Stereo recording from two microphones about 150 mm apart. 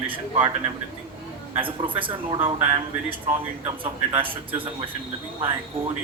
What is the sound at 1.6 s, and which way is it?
A man's voice, 35° right (ahead or behind).